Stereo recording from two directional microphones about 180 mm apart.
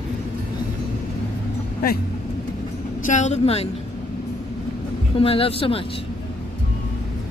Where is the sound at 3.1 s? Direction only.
40° left (ahead or behind).